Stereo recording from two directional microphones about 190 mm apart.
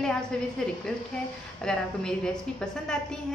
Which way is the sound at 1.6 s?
5° left (ahead or behind).